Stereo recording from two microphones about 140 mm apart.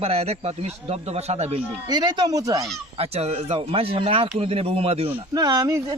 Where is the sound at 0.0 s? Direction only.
45° right (ahead or behind).